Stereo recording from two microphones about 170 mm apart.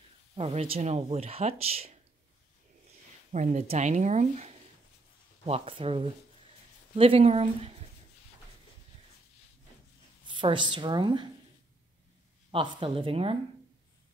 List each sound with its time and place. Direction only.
0.4 s speech: 35° right (ahead or behind)
3.3 s speech: 40° right (ahead or behind)
10.2 s a woman's voice: 30° right (ahead or behind)
12.4 s speech: 30° right (ahead or behind)